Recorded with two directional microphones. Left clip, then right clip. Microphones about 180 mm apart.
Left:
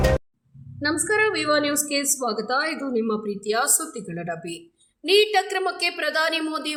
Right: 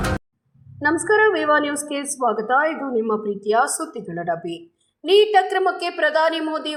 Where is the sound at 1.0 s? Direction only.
10° left (ahead or behind).